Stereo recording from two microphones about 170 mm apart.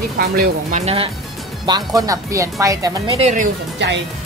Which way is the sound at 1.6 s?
20° right (ahead or behind).